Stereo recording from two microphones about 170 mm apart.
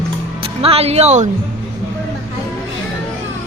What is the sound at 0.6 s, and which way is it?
Speech, 35° right (ahead or behind).